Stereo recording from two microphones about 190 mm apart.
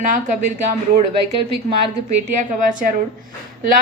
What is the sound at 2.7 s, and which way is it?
Speech, 45° right (ahead or behind).